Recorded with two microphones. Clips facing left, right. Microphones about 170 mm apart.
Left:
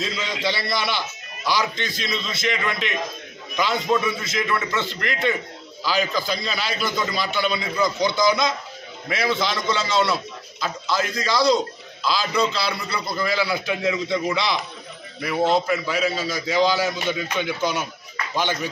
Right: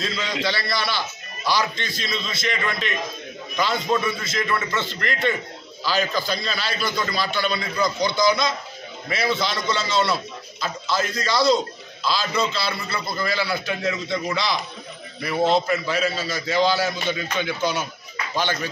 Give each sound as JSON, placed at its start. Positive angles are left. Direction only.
{"t": 0.0, "sound": "a man's voice", "side_deg": 20}